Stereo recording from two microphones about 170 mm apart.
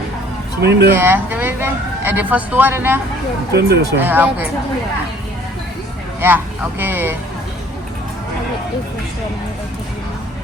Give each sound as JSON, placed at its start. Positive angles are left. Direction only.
{"t": 0.6, "sound": "speech", "side_deg": -80}
{"t": 1.0, "sound": "speech", "side_deg": -10}
{"t": 3.5, "sound": "speech", "side_deg": -75}
{"t": 3.9, "sound": "speech", "side_deg": -10}
{"t": 6.1, "sound": "speech", "side_deg": -10}